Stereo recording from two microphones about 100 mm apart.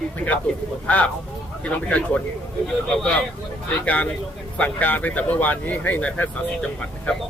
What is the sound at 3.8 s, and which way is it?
Speech, 15° left (ahead or behind).